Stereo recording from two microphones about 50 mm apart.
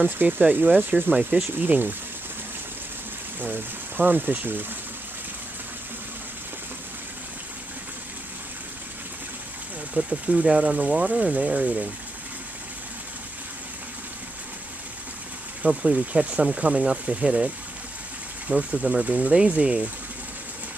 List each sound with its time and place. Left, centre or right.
0.0 s speech: right
3.3 s speech: right
9.9 s speech: right
15.6 s speech: right
18.5 s speech: right